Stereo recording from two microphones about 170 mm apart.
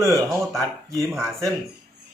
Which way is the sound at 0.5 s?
Centre (ahead or behind).